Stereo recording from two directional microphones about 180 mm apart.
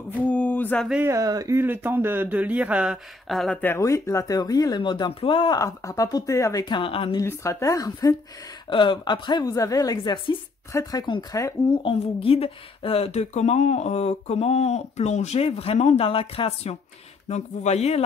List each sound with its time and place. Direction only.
0.2 s a sound: 10° left (ahead or behind)
0.8 s speech: 5° right (ahead or behind)
1.1 s speech: 20° right (ahead or behind); by 3.5 s centre (ahead or behind)
3.6 s speech: 15° left (ahead or behind); by 7.2 s 30° left (ahead or behind)
7.2 s a woman's voice: 15° left (ahead or behind); by 18.0 s 35° left (ahead or behind)